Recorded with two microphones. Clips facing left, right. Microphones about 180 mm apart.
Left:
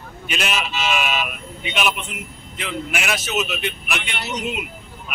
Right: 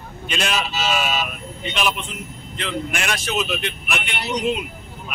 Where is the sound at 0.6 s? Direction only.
40° right (ahead or behind).